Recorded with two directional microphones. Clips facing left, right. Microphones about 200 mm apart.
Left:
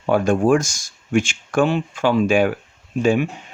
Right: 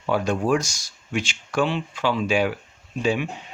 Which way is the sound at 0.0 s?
50° left (ahead or behind).